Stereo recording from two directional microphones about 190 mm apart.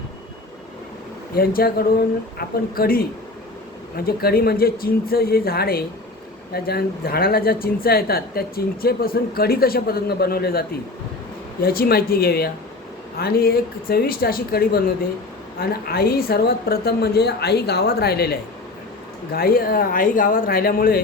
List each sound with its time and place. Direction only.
1.4 s a woman's voice: 50° left (ahead or behind)